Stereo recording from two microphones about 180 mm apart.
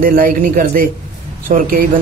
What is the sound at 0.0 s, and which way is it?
A man's voice, 50° right (ahead or behind).